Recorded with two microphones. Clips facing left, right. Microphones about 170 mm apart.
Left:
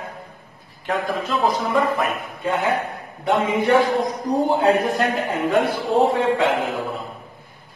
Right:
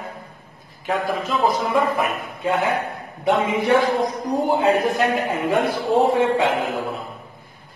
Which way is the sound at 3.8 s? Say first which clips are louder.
Even; centre (ahead or behind).